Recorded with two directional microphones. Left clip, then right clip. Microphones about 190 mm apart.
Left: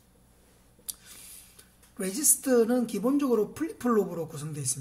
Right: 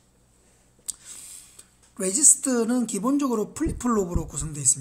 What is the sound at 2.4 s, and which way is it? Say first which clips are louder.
Speech: left 1 dB; 30° right (ahead or behind).